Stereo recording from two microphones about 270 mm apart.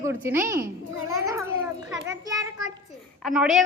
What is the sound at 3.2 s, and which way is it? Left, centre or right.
Speech, centre.